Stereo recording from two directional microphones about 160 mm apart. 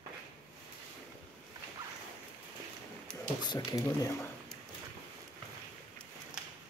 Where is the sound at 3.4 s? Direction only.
25° left (ahead or behind).